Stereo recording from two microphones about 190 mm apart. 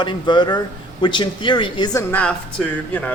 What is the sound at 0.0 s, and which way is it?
A man's voice, 25° left (ahead or behind).